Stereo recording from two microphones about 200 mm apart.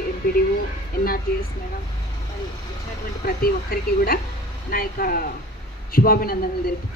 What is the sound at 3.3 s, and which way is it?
A woman's voice, 45° left (ahead or behind).